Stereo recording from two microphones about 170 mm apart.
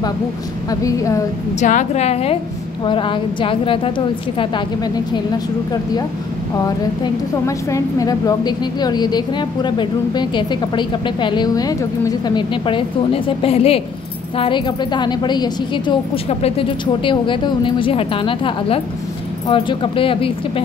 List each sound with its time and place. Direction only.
0.7 s a woman's voice: 20° left (ahead or behind)
1.6 s speech: 45° left (ahead or behind)
7.4 s a woman's voice: 20° left (ahead or behind)